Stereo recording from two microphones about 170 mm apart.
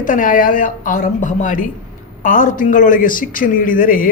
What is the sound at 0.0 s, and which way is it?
Speech, 55° left (ahead or behind).